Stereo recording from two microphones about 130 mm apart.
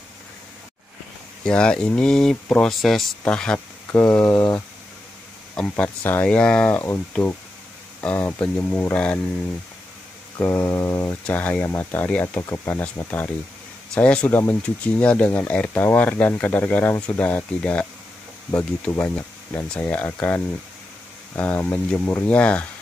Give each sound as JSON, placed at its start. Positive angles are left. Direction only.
{"t": 1.4, "sound": "speech", "side_deg": 5}
{"t": 5.6, "sound": "speech", "side_deg": 10}
{"t": 6.8, "sound": "mantra", "side_deg": 20}
{"t": 8.0, "sound": "speech", "side_deg": 15}
{"t": 10.4, "sound": "mantra", "side_deg": 20}
{"t": 11.2, "sound": "speech", "side_deg": 10}